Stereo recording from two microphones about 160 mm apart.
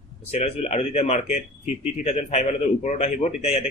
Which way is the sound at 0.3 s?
40° left (ahead or behind).